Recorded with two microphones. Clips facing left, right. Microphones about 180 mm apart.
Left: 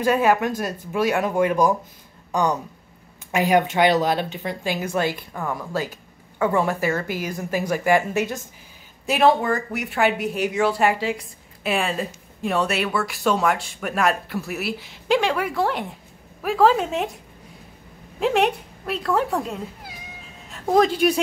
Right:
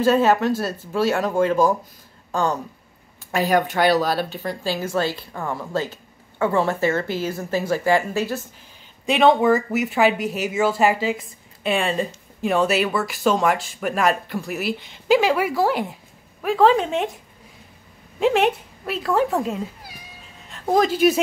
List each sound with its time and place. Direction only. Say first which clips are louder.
0.0 s speech: right 2 dB; 10° left (ahead or behind)
3.3 s speech: left 1 dB; 20° left (ahead or behind)
6.8 s a woman's voice: right 2 dB; 25° right (ahead or behind)
7.1 s speech: right 2 dB; 15° left (ahead or behind)
9.0 s speech: right 2 dB; 5° left (ahead or behind)
18.2 s speech: right 2 dB; centre (ahead or behind)